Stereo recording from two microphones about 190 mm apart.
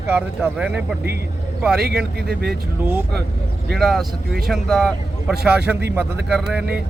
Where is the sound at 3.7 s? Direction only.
Centre (ahead or behind).